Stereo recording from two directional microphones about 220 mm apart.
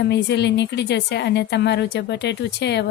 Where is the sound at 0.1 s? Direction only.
50° left (ahead or behind).